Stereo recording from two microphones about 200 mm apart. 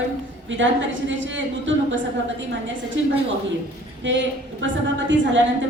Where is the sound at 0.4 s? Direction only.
70° right (ahead or behind).